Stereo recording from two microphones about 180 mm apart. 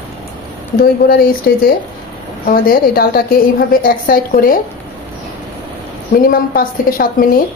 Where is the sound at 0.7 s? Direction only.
55° left (ahead or behind).